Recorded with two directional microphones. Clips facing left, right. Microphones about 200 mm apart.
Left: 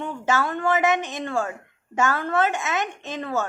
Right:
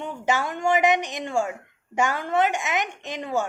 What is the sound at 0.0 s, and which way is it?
A woman's voice, 15° right (ahead or behind).